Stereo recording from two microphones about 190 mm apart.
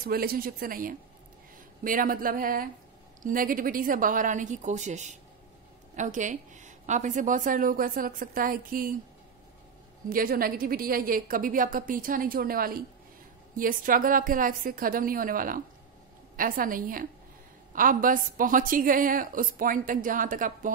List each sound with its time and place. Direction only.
0.0 s a woman's voice: 50° right (ahead or behind)
10.0 s a woman's voice: 50° right (ahead or behind)